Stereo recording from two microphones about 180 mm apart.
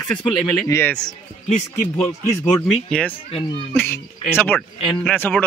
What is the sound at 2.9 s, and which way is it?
Speech, 5° left (ahead or behind).